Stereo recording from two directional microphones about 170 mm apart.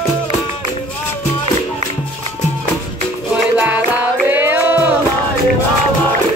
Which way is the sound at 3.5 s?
10° right (ahead or behind).